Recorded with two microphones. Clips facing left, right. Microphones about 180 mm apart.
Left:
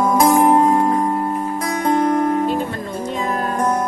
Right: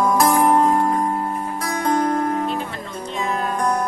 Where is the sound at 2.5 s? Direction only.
45° left (ahead or behind).